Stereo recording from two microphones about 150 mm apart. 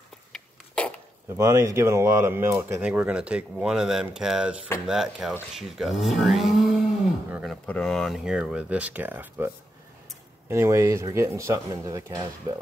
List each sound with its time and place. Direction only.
0.3 s a sound: 5° left (ahead or behind)
1.3 s speech: 20° right (ahead or behind)
10.5 s speech: 20° right (ahead or behind)